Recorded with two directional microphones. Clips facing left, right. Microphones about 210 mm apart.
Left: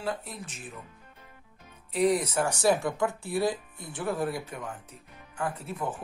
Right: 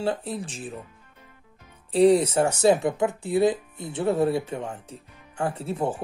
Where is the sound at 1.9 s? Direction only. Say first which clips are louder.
Right 7 dB; 30° right (ahead or behind).